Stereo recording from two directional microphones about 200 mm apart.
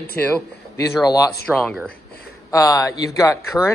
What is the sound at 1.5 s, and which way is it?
Speech, 5° right (ahead or behind).